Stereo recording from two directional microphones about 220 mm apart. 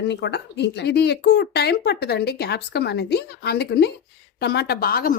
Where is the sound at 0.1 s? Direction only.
50° left (ahead or behind).